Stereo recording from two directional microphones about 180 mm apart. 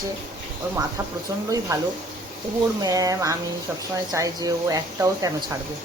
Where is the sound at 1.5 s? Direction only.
20° right (ahead or behind).